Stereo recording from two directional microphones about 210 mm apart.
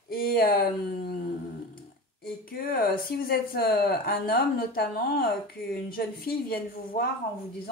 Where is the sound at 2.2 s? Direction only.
45° left (ahead or behind).